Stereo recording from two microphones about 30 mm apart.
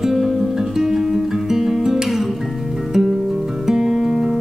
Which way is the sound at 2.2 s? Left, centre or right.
Centre.